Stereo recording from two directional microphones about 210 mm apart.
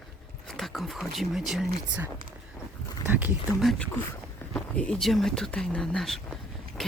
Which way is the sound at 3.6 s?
5° left (ahead or behind).